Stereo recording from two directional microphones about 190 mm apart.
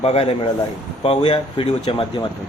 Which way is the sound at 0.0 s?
30° left (ahead or behind).